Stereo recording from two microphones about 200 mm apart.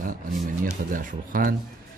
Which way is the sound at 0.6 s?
45° right (ahead or behind).